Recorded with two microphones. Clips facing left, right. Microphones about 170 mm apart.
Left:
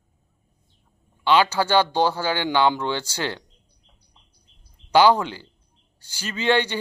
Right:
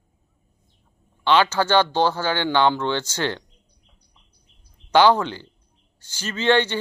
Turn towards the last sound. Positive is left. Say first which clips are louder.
# right 2 dB
turn(degrees=10)  # may be behind; listen again after turning